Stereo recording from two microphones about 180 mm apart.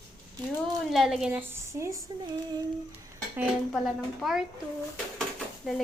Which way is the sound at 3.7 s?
Centre (ahead or behind).